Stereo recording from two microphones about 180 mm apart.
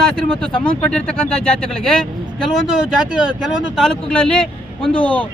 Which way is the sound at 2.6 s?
5° right (ahead or behind).